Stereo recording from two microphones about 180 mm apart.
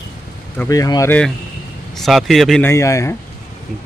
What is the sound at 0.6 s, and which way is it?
Speech, 20° left (ahead or behind).